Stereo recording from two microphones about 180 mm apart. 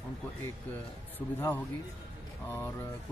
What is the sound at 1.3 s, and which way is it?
Speech, 10° left (ahead or behind).